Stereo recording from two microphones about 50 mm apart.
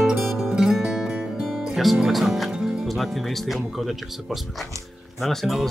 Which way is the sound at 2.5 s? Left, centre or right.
Centre.